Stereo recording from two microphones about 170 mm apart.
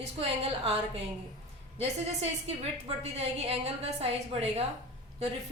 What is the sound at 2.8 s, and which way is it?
A woman's voice, 40° right (ahead or behind).